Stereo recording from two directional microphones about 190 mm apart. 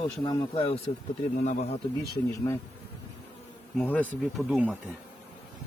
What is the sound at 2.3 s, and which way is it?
Speech, 15° left (ahead or behind).